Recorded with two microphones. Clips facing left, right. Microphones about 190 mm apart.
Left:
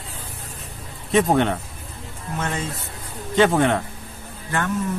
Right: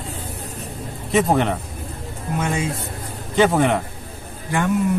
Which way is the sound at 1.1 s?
5° right (ahead or behind).